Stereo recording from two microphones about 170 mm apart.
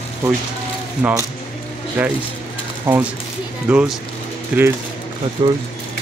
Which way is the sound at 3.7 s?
5° right (ahead or behind).